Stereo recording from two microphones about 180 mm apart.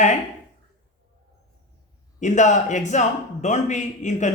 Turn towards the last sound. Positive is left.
turn(degrees=40)  # may be behind; listen again after turning